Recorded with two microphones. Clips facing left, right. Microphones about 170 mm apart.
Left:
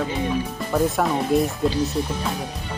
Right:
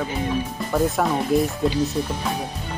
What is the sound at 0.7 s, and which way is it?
Speech, centre (ahead or behind).